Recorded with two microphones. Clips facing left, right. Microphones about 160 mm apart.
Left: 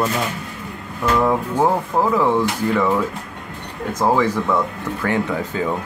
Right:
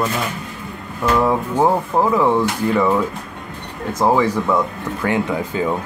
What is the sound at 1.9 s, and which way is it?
Speech, 20° right (ahead or behind).